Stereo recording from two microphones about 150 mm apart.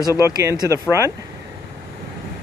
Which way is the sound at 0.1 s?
20° right (ahead or behind).